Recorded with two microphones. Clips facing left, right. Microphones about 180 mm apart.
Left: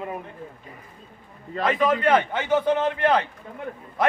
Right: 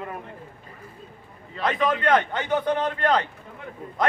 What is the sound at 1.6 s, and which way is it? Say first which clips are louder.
A man's voice: left 2 dB; centre (ahead or behind).